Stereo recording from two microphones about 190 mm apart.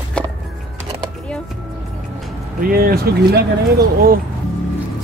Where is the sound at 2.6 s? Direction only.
50° right (ahead or behind).